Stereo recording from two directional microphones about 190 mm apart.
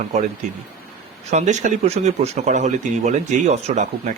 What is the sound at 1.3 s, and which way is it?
Speech, 35° right (ahead or behind).